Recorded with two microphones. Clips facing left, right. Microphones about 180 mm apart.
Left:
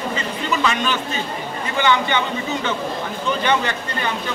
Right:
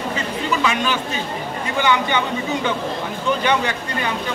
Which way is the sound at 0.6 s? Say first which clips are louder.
Even; 10° right (ahead or behind).